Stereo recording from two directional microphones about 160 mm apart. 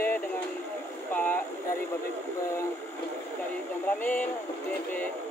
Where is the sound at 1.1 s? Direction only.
10° left (ahead or behind).